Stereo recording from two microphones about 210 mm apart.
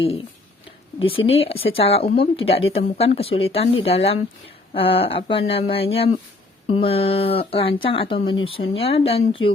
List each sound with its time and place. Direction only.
0.9 s speech: 25° left (ahead or behind)